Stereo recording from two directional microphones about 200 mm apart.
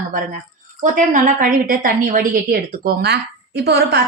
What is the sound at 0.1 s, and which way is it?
A woman's voice, 40° right (ahead or behind).